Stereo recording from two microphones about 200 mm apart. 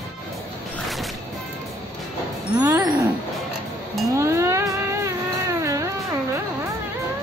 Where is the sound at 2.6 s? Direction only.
15° right (ahead or behind).